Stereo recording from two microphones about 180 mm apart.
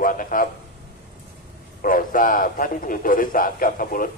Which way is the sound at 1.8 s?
50° left (ahead or behind).